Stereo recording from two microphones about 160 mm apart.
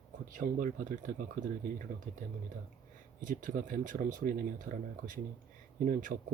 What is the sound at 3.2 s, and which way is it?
Speech, 55° right (ahead or behind).